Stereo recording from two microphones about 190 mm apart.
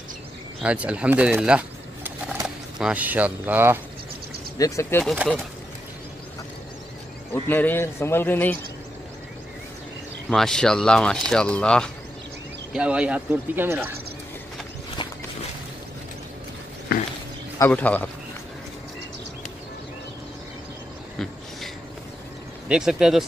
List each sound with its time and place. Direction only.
0.6 s speech: 5° right (ahead or behind)
4.6 s a man's voice: 15° left (ahead or behind)
5.0 s speech: 5° right (ahead or behind)
7.3 s a man's voice: 10° left (ahead or behind)
10.3 s speech: 5° left (ahead or behind)
12.7 s speech: 5° right (ahead or behind)
15.0 s a sound: 25° left (ahead or behind)
16.9 s a sound: 55° left (ahead or behind)
17.6 s a man's voice: 10° left (ahead or behind)
22.7 s speech: 5° right (ahead or behind)